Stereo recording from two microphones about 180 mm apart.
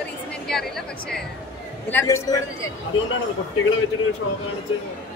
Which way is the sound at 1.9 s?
15° left (ahead or behind).